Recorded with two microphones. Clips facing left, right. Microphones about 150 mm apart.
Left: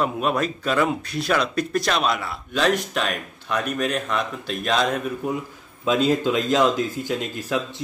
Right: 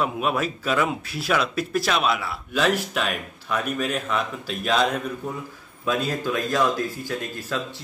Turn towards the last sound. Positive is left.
turn(degrees=20)  # may be behind; listen again after turning